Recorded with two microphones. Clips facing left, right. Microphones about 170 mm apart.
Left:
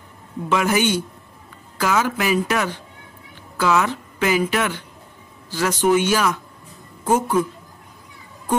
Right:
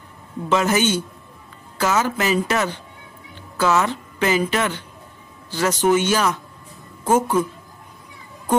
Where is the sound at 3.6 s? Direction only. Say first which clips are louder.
Even; 5° right (ahead or behind).